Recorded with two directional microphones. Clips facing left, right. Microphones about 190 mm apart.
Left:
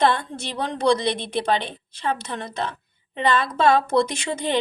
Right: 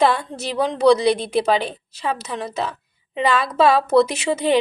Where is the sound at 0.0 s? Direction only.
10° right (ahead or behind).